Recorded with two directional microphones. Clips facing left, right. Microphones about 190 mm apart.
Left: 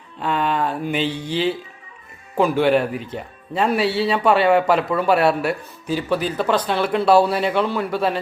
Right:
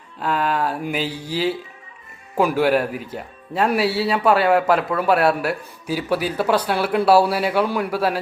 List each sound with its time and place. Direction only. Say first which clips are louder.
0.2 s speech: even; 5° right (ahead or behind)